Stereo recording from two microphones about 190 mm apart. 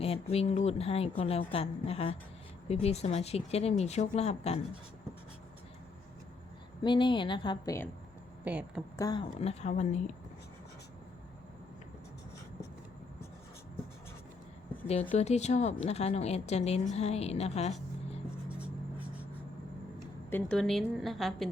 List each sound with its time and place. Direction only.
0.0 s a woman's voice: 30° left (ahead or behind)
6.8 s speech: 25° left (ahead or behind)
8.4 s a woman's voice: 5° right (ahead or behind)
9.0 s speech: 20° left (ahead or behind)
9.4 s a woman's voice: 35° left (ahead or behind)
15.1 s a woman's voice: 35° left (ahead or behind)
18.6 s writing: 10° right (ahead or behind)
20.0 s speech: 5° left (ahead or behind)